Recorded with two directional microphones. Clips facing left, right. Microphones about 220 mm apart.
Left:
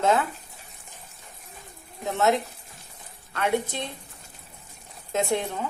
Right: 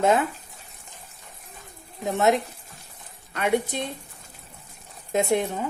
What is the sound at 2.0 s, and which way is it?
Speech, 15° right (ahead or behind).